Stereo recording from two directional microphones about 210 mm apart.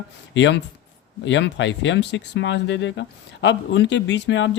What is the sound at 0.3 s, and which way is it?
Speech, 55° left (ahead or behind).